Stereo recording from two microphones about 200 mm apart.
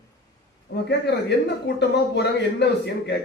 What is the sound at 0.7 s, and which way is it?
A man's voice, 55° left (ahead or behind).